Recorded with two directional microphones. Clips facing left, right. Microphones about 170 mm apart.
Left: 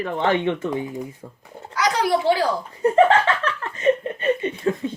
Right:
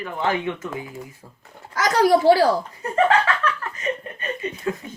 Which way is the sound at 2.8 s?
30° left (ahead or behind).